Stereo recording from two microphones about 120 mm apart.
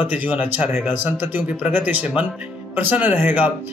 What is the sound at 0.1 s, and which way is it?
Speech, 15° right (ahead or behind).